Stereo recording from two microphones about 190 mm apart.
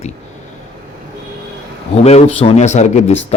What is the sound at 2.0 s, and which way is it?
A man's voice, 35° left (ahead or behind).